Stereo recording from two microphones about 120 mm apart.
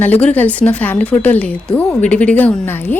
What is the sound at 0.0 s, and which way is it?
A woman's voice, 10° left (ahead or behind).